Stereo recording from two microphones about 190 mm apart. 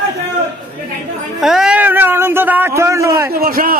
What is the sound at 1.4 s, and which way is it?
A man's voice, 5° right (ahead or behind).